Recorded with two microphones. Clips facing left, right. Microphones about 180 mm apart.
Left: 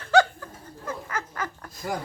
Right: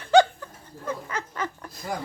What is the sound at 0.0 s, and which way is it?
Chuckle, 20° right (ahead or behind).